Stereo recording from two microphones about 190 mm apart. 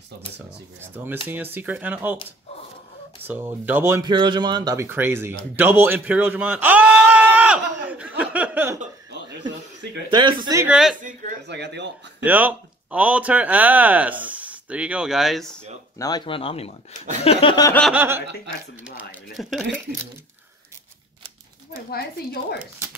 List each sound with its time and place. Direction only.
0.7 s speech: 10° right (ahead or behind)
3.3 s speech: 10° right (ahead or behind)
4.1 s speech: 25° right (ahead or behind)
10.0 s speech: 25° right (ahead or behind)
10.7 s speech: centre (ahead or behind)
11.0 s speech: 45° right (ahead or behind)
11.4 s speech: 65° right (ahead or behind)
12.2 s speech: 10° right (ahead or behind)
16.0 s speech: 20° left (ahead or behind)
17.9 s speech: 10° right (ahead or behind)
21.9 s speech: 55° left (ahead or behind)